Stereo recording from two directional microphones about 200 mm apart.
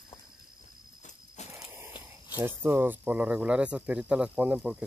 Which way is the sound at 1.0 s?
35° left (ahead or behind).